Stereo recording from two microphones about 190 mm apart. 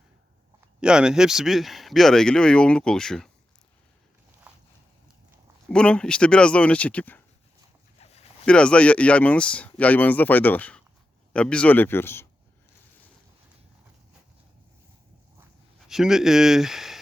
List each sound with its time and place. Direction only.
0.8 s speech: 5° right (ahead or behind)
4.5 s a sound: 5° right (ahead or behind)
5.6 s speech: 5° left (ahead or behind)
7.9 s a sound: 35° left (ahead or behind)
8.4 s speech: 5° left (ahead or behind)
15.9 s speech: centre (ahead or behind)